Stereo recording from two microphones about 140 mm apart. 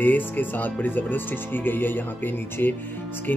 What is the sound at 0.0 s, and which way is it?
Speech, 15° left (ahead or behind).